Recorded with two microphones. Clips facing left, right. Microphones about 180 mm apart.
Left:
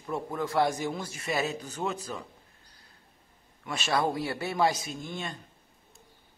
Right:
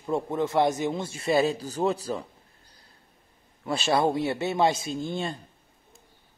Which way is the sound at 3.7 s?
30° right (ahead or behind).